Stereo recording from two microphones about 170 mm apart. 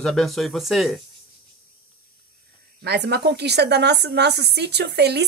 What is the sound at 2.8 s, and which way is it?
A woman's voice, 80° right.